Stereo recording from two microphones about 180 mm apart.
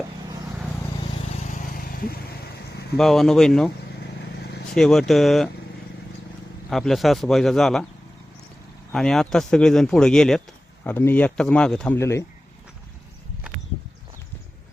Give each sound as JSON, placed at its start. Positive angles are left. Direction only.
{"t": 1.4, "sound": "vehicle", "side_deg": 45}
{"t": 3.0, "sound": "speech", "side_deg": 0}
{"t": 4.2, "sound": "vehicle", "side_deg": 65}
{"t": 4.7, "sound": "speech", "side_deg": 5}
{"t": 6.7, "sound": "speech", "side_deg": 0}
{"t": 8.9, "sound": "speech", "side_deg": 0}
{"t": 11.9, "sound": "speech", "side_deg": 15}